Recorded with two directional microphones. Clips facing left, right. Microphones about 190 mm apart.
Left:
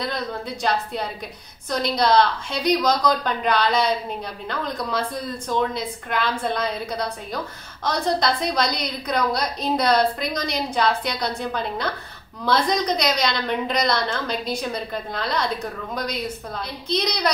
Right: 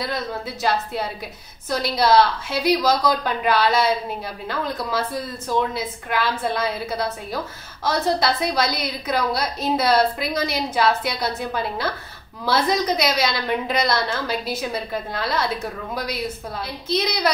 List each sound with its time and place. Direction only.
0.0 s a woman's voice: 5° right (ahead or behind)